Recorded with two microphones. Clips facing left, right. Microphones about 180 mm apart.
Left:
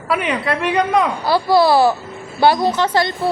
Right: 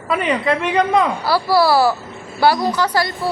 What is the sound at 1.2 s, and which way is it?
A woman's voice, 20° left (ahead or behind).